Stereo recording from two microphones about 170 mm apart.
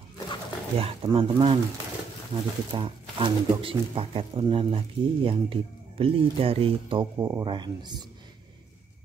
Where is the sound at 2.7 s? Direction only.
30° right (ahead or behind).